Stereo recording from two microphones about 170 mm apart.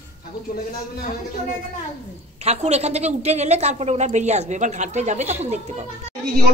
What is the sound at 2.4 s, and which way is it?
A woman's voice, 40° right (ahead or behind).